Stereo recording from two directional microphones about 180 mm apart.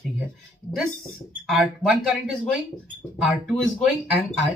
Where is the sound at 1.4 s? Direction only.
Centre (ahead or behind).